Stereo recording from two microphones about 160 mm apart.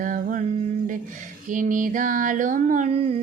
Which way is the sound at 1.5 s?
55° right (ahead or behind).